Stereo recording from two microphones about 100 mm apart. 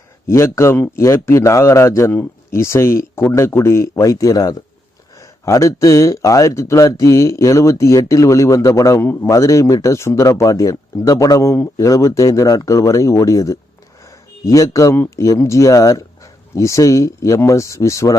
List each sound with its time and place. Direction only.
0.3 s a man's voice: 30° left (ahead or behind)